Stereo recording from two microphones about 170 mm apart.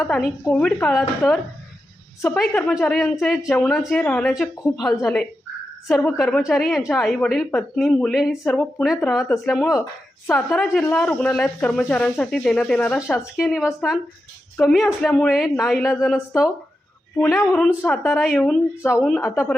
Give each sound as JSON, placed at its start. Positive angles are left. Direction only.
{"t": 0.2, "sound": "a woman's voice", "side_deg": 0}
{"t": 13.3, "sound": "a woman's voice", "side_deg": 0}
{"t": 17.2, "sound": "speech", "side_deg": 15}
{"t": 17.4, "sound": "a woman's voice", "side_deg": 5}